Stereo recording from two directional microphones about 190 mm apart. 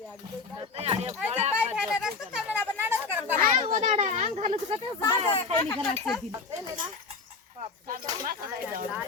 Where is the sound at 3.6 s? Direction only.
35° right (ahead or behind).